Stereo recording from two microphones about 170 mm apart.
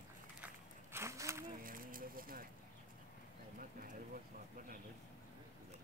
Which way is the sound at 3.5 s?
55° right (ahead or behind).